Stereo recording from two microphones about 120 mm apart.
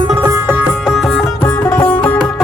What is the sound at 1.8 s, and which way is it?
Music, 15° left (ahead or behind).